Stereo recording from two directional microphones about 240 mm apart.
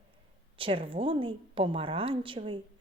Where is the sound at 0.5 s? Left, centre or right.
Right.